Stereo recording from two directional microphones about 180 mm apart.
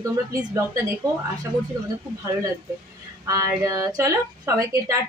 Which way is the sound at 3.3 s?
20° right (ahead or behind).